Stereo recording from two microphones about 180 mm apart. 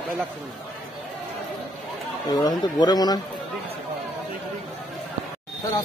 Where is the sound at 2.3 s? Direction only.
20° left (ahead or behind).